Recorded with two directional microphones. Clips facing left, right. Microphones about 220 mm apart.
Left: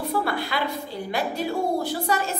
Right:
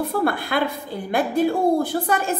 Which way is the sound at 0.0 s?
50° right (ahead or behind).